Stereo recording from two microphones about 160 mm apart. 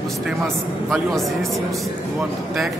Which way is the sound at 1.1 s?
Centre (ahead or behind).